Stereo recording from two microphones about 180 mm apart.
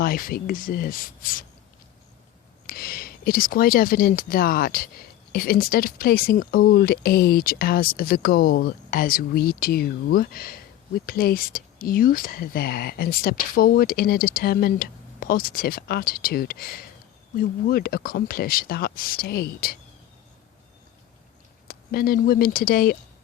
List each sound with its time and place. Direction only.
0.0 s speech: 55° left (ahead or behind)
2.6 s speech: 55° left (ahead or behind)
21.7 s speech: 55° left (ahead or behind)